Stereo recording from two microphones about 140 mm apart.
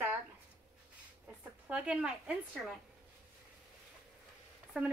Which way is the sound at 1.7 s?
10° right (ahead or behind).